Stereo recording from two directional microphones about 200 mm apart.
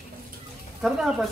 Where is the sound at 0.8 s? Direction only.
Centre (ahead or behind).